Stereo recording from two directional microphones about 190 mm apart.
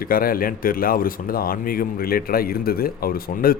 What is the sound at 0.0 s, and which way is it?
A man's voice, 50° left (ahead or behind).